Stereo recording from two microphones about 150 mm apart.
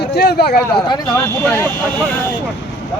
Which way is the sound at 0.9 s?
25° left (ahead or behind).